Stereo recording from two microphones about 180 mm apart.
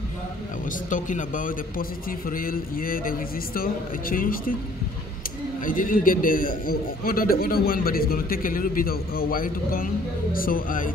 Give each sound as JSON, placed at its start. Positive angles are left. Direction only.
{"t": 0.7, "sound": "a man's voice", "side_deg": 45}
{"t": 5.6, "sound": "a man's voice", "side_deg": 50}